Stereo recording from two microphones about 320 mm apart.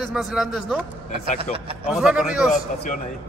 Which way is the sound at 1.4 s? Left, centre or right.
Centre.